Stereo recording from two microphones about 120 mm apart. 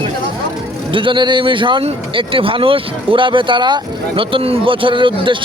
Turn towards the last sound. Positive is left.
turn(degrees=-45)  # may be behind; listen again after turning